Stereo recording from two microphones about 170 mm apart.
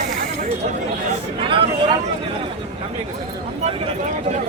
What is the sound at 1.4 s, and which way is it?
Speech, 30° right (ahead or behind).